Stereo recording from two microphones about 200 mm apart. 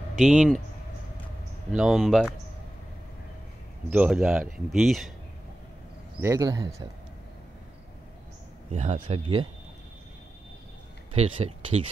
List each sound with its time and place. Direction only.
0.1 s speech: centre (ahead or behind)
1.7 s speech: centre (ahead or behind)
3.9 s speech: 5° right (ahead or behind)
6.2 s speech: 15° right (ahead or behind)
8.7 s speech: 35° right (ahead or behind)
11.1 s speech: 30° right (ahead or behind)